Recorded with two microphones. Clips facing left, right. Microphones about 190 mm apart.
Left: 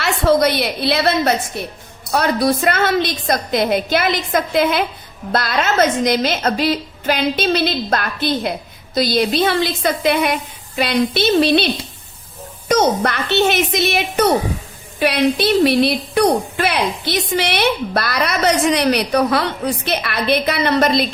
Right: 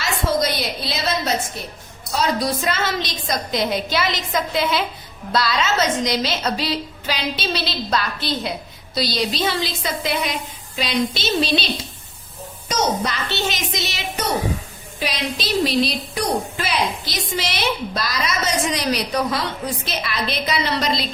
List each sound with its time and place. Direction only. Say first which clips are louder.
0.0 s a woman's voice: left 7 dB; 65° left (ahead or behind)